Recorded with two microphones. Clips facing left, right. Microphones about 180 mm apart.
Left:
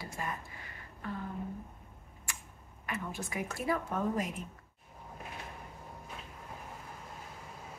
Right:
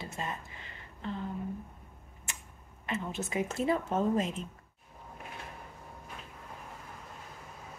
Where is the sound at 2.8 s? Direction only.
25° right (ahead or behind).